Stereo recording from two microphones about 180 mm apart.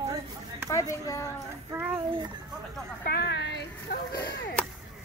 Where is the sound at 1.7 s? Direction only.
15° right (ahead or behind).